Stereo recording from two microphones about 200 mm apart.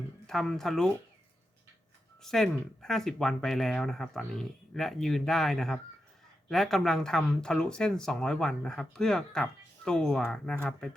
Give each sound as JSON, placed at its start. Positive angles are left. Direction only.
{"t": 0.3, "sound": "speech", "side_deg": 0}
{"t": 2.2, "sound": "speech", "side_deg": 0}